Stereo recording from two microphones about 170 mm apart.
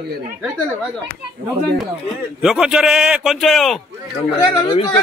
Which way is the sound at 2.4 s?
Centre (ahead or behind).